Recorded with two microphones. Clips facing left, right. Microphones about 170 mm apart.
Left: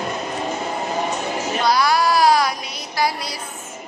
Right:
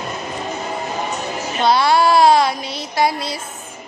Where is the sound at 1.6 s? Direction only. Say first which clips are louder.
Right 4 dB; 25° right (ahead or behind).